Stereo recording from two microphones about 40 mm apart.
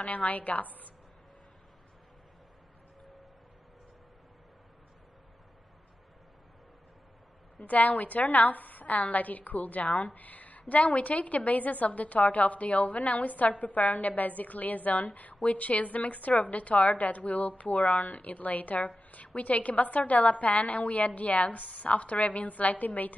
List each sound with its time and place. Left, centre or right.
0.0 s a woman's voice: left
7.6 s a woman's voice: left
10.1 s a sound: left
10.7 s a woman's voice: left